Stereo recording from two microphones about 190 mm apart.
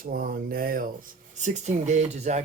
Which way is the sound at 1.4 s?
40° right (ahead or behind).